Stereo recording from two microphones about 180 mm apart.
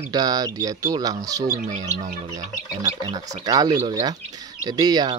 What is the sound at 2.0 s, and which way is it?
Speech, 40° right (ahead or behind).